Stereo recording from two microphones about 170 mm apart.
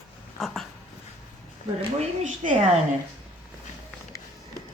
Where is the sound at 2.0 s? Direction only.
50° right (ahead or behind).